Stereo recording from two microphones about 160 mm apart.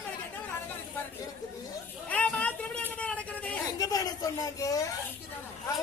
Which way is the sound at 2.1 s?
10° left (ahead or behind).